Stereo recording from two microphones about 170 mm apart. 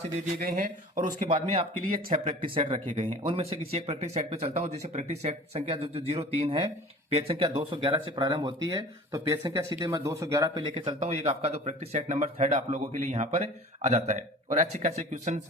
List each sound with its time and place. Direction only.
0.3 s speech: 60° right (ahead or behind); by 15.4 s 45° right (ahead or behind)